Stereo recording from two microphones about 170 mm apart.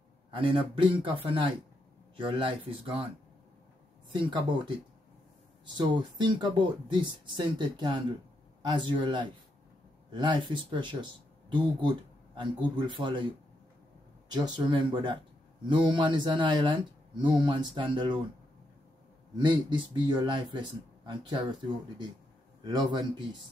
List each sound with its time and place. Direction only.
0.4 s speech: 30° right (ahead or behind)
4.1 s speech: 30° right (ahead or behind)
14.3 s speech: 25° right (ahead or behind)
19.3 s speech: 25° right (ahead or behind)